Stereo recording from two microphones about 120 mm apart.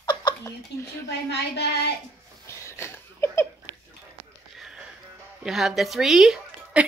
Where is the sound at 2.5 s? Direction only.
20° left (ahead or behind).